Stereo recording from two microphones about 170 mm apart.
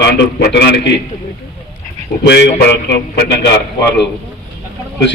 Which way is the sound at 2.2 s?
85° left.